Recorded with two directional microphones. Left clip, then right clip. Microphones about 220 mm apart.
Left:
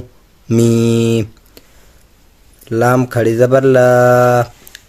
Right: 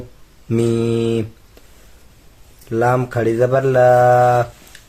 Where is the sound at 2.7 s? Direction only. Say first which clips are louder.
Left 4 dB; 50° left (ahead or behind).